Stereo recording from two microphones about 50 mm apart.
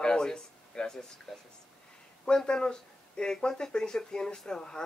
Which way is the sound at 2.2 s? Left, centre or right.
Centre.